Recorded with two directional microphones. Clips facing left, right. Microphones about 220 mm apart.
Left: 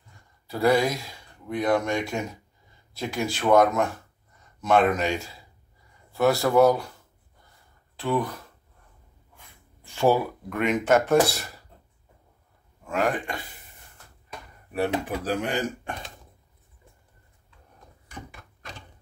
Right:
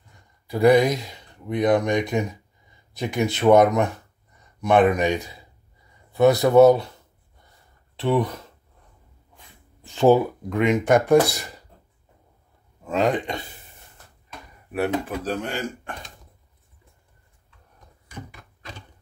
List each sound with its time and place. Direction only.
0.5 s speech: 15° right (ahead or behind)
7.9 s speech: 25° right (ahead or behind)
9.8 s speech: 20° right (ahead or behind)
12.8 s speech: 20° right (ahead or behind)
15.0 s speech: 15° left (ahead or behind)